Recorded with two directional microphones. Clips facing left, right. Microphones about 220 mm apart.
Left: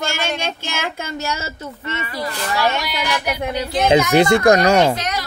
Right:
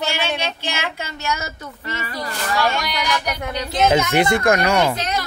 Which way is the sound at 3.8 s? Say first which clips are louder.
Left 3 dB; 25° left (ahead or behind).